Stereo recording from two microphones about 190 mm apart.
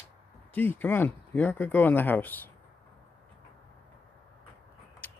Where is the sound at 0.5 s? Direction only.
10° left (ahead or behind).